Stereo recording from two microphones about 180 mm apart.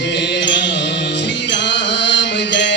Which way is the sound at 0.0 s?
70° left (ahead or behind).